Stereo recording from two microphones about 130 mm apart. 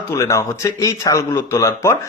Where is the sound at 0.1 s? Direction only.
25° left (ahead or behind).